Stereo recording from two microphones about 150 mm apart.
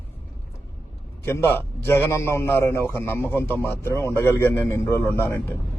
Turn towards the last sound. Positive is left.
turn(degrees=15)  # may be behind; listen again after turning